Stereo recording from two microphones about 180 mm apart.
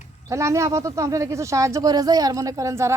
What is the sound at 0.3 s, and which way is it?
Speech, 15° right (ahead or behind).